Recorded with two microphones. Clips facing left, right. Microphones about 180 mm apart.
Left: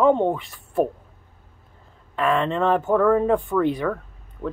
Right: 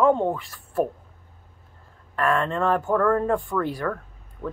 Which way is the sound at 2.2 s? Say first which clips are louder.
Left 2 dB; 20° left (ahead or behind).